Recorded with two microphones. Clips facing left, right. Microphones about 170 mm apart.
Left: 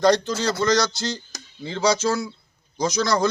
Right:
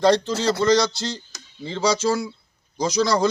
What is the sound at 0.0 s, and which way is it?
A man's voice, 30° right (ahead or behind).